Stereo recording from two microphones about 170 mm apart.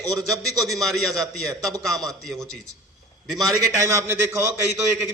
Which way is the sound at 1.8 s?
Centre (ahead or behind).